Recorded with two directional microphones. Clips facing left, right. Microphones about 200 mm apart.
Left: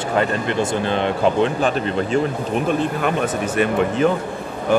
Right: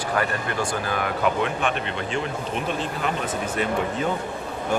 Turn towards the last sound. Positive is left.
turn(degrees=65)  # may be behind; listen again after turning